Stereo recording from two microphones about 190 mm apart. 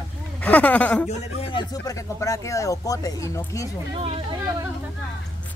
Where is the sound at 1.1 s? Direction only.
30° left (ahead or behind).